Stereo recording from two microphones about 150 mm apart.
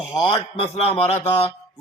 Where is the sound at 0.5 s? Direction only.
40° left (ahead or behind).